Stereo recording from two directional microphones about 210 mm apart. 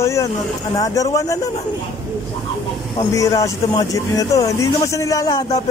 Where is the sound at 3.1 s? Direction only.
15° left (ahead or behind).